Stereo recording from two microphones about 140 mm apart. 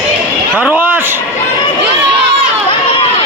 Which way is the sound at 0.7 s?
15° right (ahead or behind).